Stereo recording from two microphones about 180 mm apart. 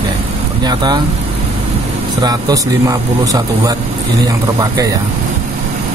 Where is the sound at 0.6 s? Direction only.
25° right (ahead or behind).